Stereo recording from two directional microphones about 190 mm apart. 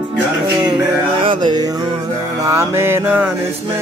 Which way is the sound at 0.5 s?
20° right (ahead or behind).